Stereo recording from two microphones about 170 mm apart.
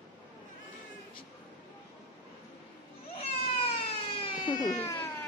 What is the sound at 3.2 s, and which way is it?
Baby cry, 35° left (ahead or behind).